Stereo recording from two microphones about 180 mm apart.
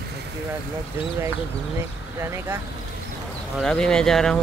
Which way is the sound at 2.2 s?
15° right (ahead or behind).